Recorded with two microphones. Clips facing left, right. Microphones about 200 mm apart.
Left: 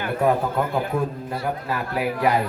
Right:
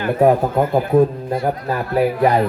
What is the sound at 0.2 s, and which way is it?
A man's voice, 45° right (ahead or behind).